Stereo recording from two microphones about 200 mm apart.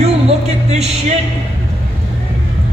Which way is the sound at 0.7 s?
30° right (ahead or behind).